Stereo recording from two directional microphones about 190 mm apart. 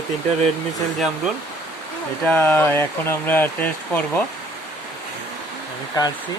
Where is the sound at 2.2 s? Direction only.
10° left (ahead or behind).